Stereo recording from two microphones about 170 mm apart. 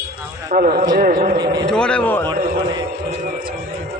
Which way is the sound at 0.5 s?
60° right (ahead or behind).